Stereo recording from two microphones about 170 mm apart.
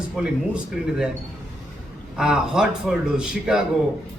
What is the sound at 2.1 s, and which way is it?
A man's voice, 5° right (ahead or behind).